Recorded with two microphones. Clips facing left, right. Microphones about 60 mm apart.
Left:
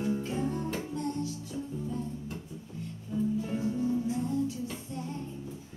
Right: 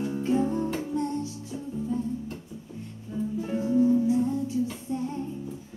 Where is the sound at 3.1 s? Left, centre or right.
Centre.